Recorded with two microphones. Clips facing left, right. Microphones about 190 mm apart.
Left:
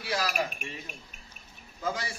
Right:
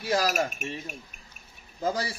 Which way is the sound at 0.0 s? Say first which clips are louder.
Right 5 dB; 40° right (ahead or behind).